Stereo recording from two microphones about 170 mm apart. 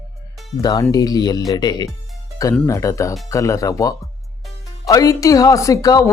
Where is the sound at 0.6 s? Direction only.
20° left (ahead or behind).